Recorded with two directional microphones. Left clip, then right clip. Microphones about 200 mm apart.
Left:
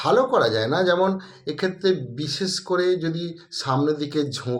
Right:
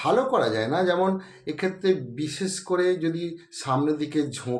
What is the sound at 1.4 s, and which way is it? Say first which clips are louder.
Speech: left 2 dB; 5° left (ahead or behind).